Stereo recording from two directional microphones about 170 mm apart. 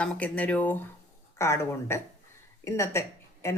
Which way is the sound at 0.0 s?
5° left (ahead or behind).